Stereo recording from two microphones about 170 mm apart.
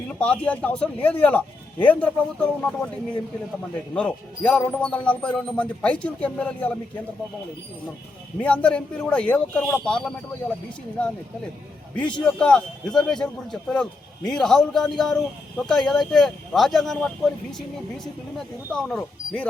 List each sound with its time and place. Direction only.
0.2 s speech: 10° left (ahead or behind)
3.9 s speech: 5° left (ahead or behind)
8.4 s a man's voice: 5° left (ahead or behind)
11.9 s a man's voice: 5° left (ahead or behind)